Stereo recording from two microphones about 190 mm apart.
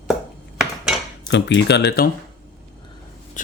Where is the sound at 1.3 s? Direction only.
70° left (ahead or behind).